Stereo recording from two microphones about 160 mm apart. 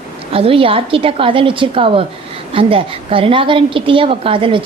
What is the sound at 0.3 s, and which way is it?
A woman's voice, 35° right (ahead or behind).